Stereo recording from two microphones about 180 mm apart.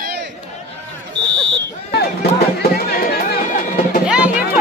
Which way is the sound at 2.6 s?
60° left (ahead or behind).